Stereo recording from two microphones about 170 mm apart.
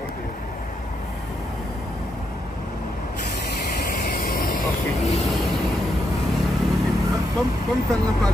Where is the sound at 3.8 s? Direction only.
60° left (ahead or behind).